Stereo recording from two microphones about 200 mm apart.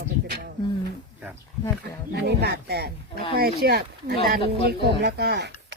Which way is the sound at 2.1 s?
55° right (ahead or behind).